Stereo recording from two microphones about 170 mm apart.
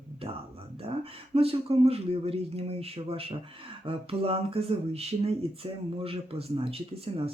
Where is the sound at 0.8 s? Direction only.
35° right (ahead or behind).